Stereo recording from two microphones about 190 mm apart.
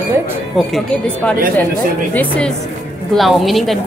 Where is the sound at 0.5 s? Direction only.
Centre (ahead or behind).